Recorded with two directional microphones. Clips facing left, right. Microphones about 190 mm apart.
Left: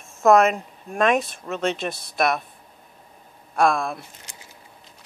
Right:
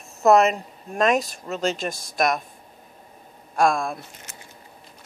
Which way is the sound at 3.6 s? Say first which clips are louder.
Even; centre (ahead or behind).